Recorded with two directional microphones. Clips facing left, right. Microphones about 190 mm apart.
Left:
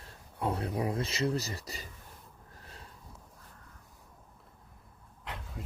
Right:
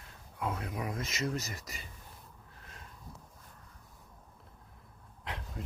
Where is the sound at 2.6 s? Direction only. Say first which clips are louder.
Left 2 dB; 35° left (ahead or behind).